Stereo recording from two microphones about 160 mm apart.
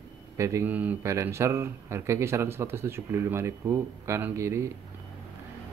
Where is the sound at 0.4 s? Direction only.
20° right (ahead or behind).